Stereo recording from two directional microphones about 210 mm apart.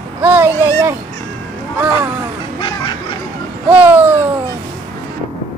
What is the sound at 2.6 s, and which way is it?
Duck, 20° left (ahead or behind).